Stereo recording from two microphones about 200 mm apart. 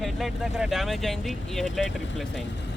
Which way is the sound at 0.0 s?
Centre (ahead or behind).